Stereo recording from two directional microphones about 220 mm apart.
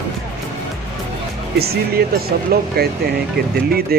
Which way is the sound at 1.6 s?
45° right (ahead or behind).